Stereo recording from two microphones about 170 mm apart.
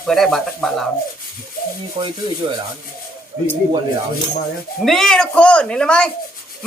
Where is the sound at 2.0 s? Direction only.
30° right (ahead or behind).